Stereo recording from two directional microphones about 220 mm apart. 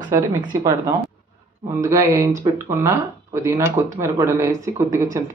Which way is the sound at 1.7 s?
15° right (ahead or behind).